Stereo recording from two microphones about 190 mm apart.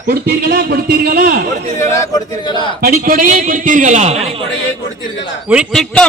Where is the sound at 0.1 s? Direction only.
55° right (ahead or behind).